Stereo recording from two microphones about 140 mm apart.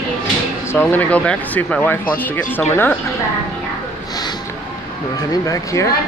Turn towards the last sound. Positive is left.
turn(degrees=25)  # may be behind; listen again after turning